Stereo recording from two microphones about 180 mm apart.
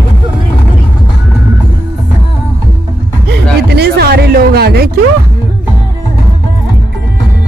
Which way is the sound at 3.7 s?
65° right (ahead or behind).